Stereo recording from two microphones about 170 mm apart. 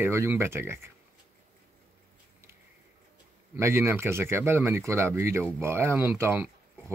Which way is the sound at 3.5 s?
15° right (ahead or behind).